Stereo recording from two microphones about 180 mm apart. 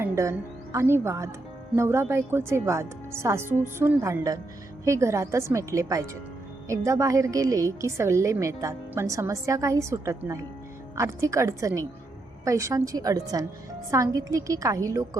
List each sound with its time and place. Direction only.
0.0 s a woman's voice: 15° right (ahead or behind)